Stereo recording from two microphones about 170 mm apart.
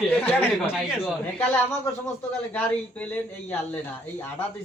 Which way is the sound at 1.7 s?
10° left (ahead or behind).